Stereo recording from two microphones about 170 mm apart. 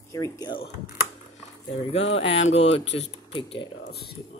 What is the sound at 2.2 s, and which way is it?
Speech, 35° left (ahead or behind).